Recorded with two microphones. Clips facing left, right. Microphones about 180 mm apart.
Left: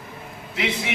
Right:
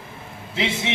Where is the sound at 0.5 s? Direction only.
25° right (ahead or behind).